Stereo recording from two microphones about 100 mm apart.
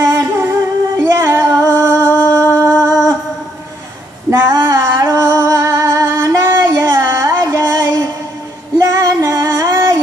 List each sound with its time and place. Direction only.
0.1 s music: 25° right (ahead or behind)
1.0 s female singing: 25° right (ahead or behind)
4.3 s music: 25° right (ahead or behind)
6.5 s music: 25° right (ahead or behind)
8.7 s female singing: 25° right (ahead or behind)